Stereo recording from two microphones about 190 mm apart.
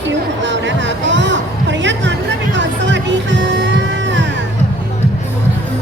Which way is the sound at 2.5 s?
70° right (ahead or behind).